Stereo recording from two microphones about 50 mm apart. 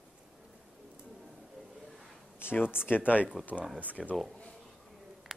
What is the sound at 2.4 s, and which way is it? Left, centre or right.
Speech, left.